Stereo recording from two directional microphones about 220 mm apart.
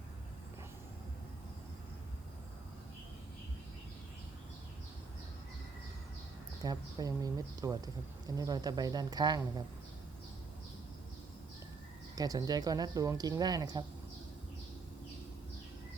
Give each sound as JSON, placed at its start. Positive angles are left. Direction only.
{"t": 6.6, "sound": "speech", "side_deg": -15}
{"t": 12.1, "sound": "speech", "side_deg": -15}